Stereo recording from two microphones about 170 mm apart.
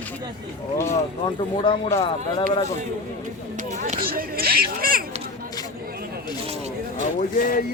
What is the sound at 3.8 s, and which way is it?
Speech, 50° right (ahead or behind).